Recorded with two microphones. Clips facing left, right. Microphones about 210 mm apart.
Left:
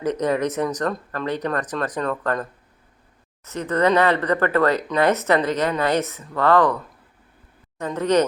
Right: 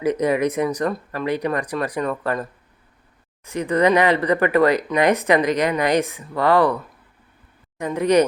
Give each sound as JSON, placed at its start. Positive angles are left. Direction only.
{"t": 0.0, "sound": "speech", "side_deg": -10}
{"t": 7.8, "sound": "speech", "side_deg": -10}